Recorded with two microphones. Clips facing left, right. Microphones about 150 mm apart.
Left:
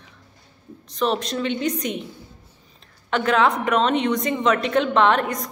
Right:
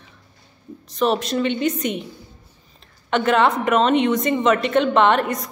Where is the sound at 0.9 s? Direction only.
5° right (ahead or behind).